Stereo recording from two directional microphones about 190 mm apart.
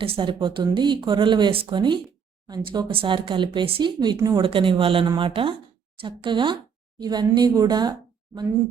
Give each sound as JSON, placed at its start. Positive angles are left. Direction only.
{"t": 0.0, "sound": "speech", "side_deg": -25}